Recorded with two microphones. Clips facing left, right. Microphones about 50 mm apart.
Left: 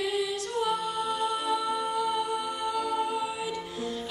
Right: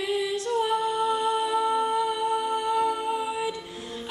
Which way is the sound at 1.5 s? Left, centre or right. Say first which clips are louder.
Right 4 dB; right.